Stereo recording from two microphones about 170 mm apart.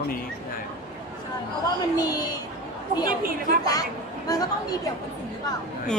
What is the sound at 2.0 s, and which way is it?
Speech, 20° left (ahead or behind).